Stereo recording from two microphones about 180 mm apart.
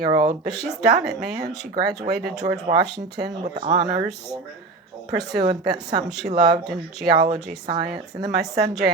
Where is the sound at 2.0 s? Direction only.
65° right (ahead or behind).